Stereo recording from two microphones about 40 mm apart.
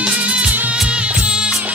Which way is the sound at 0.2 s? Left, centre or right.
Right.